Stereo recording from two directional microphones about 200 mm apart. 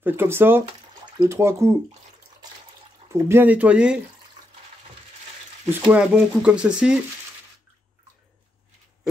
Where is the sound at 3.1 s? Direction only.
10° right (ahead or behind).